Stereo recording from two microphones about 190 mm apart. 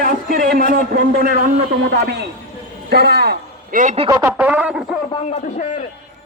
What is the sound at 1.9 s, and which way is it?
A man's voice, 60° right (ahead or behind).